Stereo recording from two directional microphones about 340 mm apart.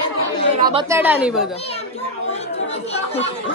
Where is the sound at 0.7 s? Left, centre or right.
Centre.